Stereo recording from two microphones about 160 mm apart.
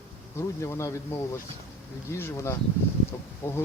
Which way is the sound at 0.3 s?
20° left (ahead or behind).